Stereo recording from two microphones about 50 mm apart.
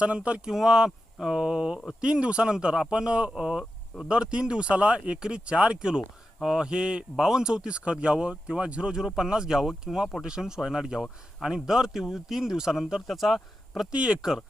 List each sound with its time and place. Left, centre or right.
0.0 s speech: right
0.5 s speech: centre
13.9 s speech: right